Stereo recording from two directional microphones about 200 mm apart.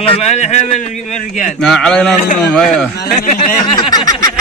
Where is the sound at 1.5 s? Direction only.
Centre (ahead or behind).